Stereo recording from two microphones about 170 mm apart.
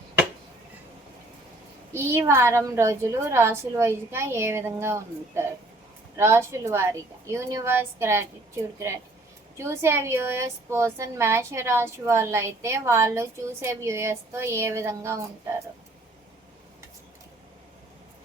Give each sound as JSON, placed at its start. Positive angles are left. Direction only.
{"t": 1.9, "sound": "a woman's voice", "side_deg": -15}